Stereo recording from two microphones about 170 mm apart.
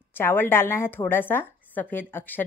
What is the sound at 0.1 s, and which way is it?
Speech, 15° left (ahead or behind).